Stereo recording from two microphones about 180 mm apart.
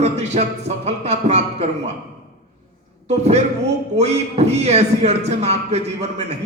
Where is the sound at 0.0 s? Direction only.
40° right (ahead or behind).